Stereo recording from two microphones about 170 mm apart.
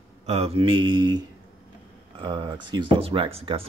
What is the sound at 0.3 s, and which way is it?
Speech, 35° right (ahead or behind).